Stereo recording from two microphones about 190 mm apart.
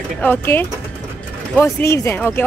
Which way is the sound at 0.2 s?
10° left (ahead or behind).